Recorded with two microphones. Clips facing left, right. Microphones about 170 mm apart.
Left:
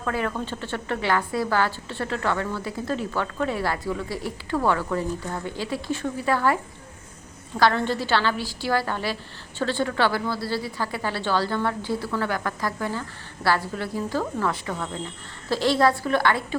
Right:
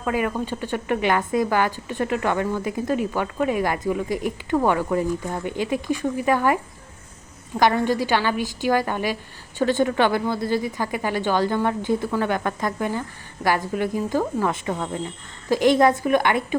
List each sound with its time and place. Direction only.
0.0 s a woman's voice: 15° right (ahead or behind)